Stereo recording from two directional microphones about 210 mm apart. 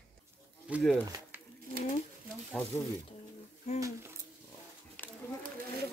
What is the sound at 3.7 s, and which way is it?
Speech, 30° left (ahead or behind).